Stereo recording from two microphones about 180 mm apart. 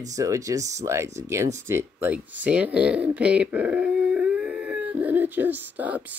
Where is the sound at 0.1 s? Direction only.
15° right (ahead or behind).